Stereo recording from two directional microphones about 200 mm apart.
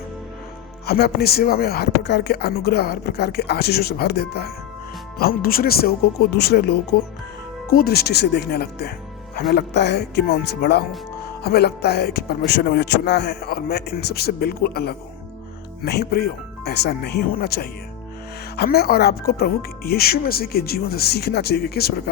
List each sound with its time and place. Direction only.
0.9 s speech: 50° left (ahead or behind)